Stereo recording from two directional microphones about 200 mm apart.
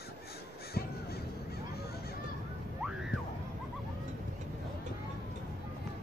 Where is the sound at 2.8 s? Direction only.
5° right (ahead or behind).